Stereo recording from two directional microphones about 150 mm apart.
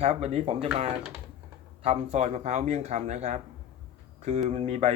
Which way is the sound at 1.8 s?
45° right (ahead or behind).